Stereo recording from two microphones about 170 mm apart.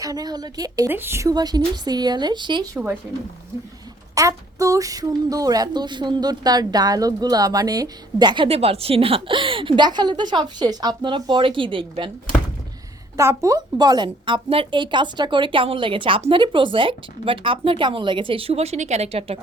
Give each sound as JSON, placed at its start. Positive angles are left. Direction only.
{"t": 0.0, "sound": "a woman's voice", "side_deg": -20}
{"t": 4.1, "sound": "a woman's voice", "side_deg": -20}
{"t": 8.4, "sound": "a woman's voice", "side_deg": -35}
{"t": 13.1, "sound": "a woman's voice", "side_deg": -20}